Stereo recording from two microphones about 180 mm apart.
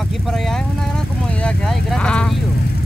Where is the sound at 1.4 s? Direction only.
5° left (ahead or behind).